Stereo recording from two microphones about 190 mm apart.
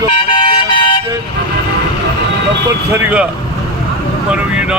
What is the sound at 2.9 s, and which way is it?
Speech, 5° right (ahead or behind).